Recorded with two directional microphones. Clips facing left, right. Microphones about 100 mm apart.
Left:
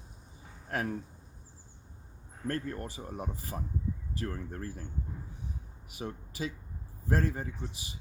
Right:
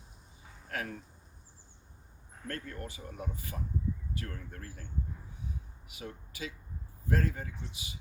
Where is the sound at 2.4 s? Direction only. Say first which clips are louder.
Left 6 dB; 30° left (ahead or behind).